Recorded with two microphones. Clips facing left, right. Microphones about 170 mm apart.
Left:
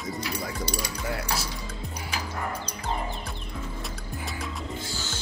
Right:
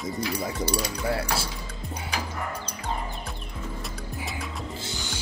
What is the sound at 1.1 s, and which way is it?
Speech, 30° right (ahead or behind).